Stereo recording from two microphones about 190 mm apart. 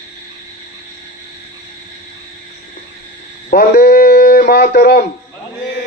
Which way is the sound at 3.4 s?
55° left (ahead or behind).